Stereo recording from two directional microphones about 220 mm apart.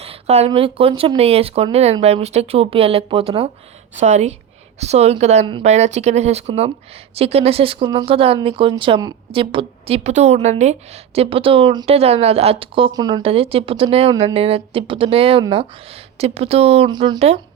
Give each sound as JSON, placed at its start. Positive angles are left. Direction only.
{"t": 0.0, "sound": "speech", "side_deg": -30}